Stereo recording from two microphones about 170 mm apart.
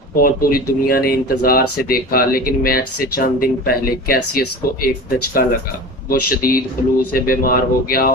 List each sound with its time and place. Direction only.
0.2 s speech: 60° left (ahead or behind)